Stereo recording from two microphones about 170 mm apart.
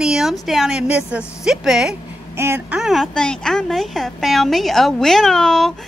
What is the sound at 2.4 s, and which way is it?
Speech, 15° right (ahead or behind).